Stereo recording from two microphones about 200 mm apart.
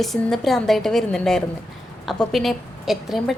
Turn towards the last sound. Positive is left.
turn(degrees=0)  # may be behind; listen again after turning